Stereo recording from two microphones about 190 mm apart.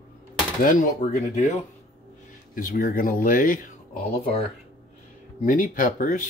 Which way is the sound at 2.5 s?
45° left (ahead or behind).